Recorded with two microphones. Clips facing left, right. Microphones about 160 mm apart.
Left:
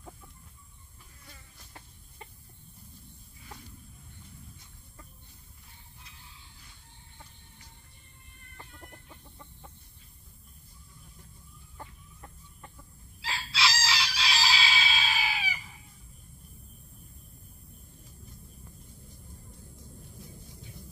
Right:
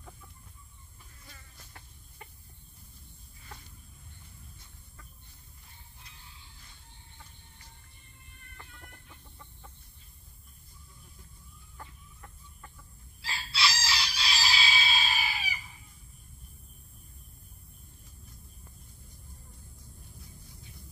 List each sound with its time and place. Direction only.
13.2 s chicken: 90° left